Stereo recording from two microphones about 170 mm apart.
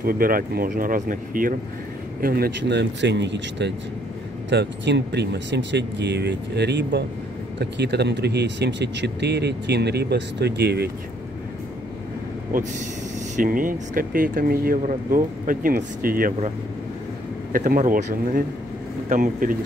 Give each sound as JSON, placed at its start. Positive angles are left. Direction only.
{"t": 0.0, "sound": "speech", "side_deg": -55}
{"t": 2.2, "sound": "speech", "side_deg": -65}
{"t": 13.4, "sound": "speech", "side_deg": -55}
{"t": 17.5, "sound": "speech", "side_deg": -55}